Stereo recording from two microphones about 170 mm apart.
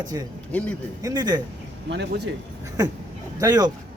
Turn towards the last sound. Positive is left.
turn(degrees=-20)  # may be behind; listen again after turning